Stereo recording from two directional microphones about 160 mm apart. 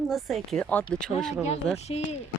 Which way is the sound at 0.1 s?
Centre (ahead or behind).